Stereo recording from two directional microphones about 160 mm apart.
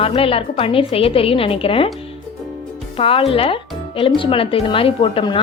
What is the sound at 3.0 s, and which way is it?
A woman's voice, 35° left (ahead or behind).